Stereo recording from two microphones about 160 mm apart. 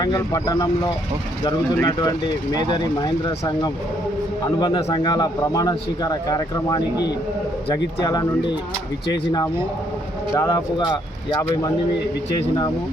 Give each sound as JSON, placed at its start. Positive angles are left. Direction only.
{"t": 0.0, "sound": "speech", "side_deg": 25}
{"t": 10.3, "sound": "speech", "side_deg": 25}